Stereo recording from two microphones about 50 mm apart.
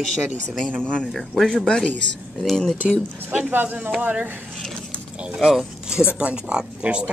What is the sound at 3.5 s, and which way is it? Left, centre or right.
Speech, right.